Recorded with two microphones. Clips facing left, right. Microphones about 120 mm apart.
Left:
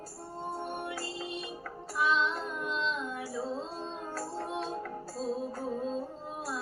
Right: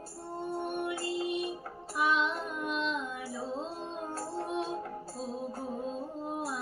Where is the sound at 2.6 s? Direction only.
55° right (ahead or behind).